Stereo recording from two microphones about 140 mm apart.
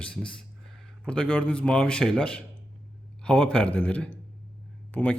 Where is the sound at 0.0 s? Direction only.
5° left (ahead or behind).